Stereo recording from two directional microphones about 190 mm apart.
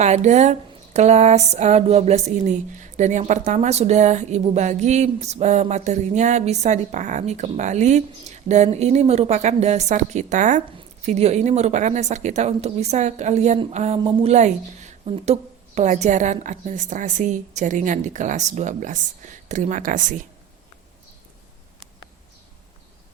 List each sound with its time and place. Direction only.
0.0 s speech: 40° right (ahead or behind)